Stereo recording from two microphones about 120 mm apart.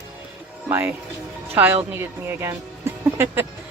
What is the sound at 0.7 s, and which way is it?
A woman's voice, 15° right (ahead or behind).